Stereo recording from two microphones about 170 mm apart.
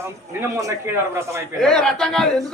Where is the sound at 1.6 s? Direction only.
Centre (ahead or behind).